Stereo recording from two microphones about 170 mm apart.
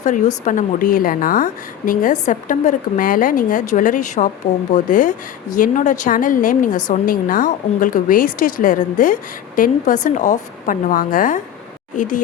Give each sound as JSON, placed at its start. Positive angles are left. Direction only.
{"t": 0.4, "sound": "a woman's voice", "side_deg": 55}
{"t": 6.7, "sound": "a woman's voice", "side_deg": 25}
{"t": 6.9, "sound": "a woman's voice", "side_deg": 55}